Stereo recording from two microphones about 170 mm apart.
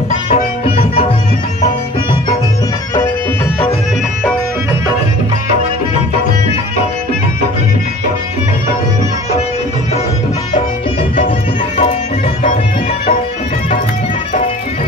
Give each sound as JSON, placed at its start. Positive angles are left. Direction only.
{"t": 0.3, "sound": "tabla", "side_deg": 35}